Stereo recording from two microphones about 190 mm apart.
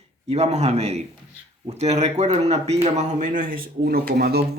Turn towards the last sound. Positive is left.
turn(degrees=-55)  # may be behind; listen again after turning